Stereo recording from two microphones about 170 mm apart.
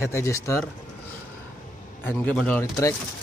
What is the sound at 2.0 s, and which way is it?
Speech, 10° left (ahead or behind).